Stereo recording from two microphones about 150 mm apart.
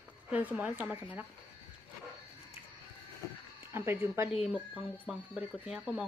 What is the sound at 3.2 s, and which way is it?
Sheep, 25° left (ahead or behind).